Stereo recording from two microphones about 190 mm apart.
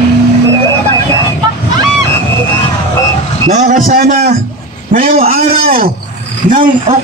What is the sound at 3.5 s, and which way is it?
A man's voice, 40° right (ahead or behind).